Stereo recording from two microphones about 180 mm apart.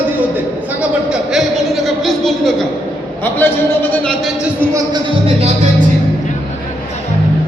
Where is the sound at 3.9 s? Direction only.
5° left (ahead or behind).